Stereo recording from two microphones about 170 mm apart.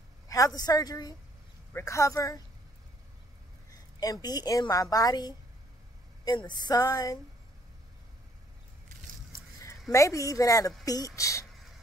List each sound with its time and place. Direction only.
0.6 s a woman's voice: 20° left (ahead or behind)
4.0 s a woman's voice: 20° left (ahead or behind)
9.3 s a sound: 20° left (ahead or behind)
10.9 s a woman's voice: 20° left (ahead or behind)